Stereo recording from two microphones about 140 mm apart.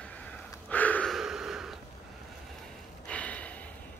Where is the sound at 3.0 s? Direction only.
10° left (ahead or behind).